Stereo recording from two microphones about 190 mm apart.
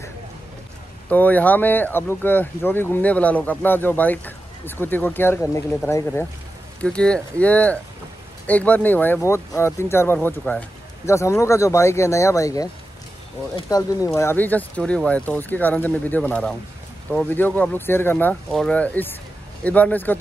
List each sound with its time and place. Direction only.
1.0 s speech: 10° left (ahead or behind)